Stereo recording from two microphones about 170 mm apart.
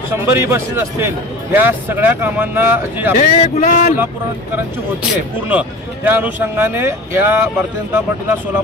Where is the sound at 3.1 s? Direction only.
45° left (ahead or behind).